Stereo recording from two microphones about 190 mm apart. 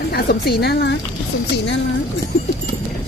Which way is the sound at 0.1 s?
55° left (ahead or behind).